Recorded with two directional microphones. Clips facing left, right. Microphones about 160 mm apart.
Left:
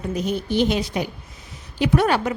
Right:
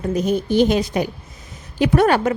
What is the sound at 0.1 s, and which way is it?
A woman's voice, 45° right (ahead or behind).